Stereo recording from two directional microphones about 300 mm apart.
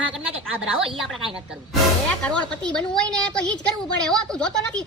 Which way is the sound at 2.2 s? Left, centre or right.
Centre.